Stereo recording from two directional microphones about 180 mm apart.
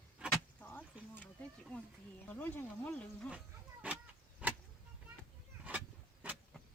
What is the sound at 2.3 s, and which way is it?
Speech, 10° left (ahead or behind).